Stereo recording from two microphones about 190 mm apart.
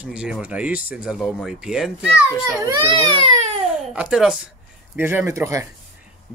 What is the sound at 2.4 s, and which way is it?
Speech, 20° right (ahead or behind).